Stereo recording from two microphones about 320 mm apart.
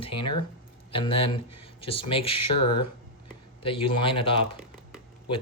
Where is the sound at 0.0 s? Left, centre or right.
Centre.